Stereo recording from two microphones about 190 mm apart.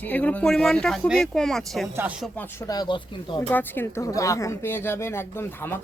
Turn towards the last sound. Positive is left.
turn(degrees=10)  # may be behind; listen again after turning